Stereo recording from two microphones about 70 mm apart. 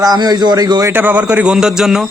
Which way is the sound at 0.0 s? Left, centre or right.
Right.